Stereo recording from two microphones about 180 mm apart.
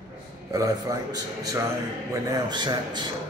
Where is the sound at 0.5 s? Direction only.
20° right (ahead or behind).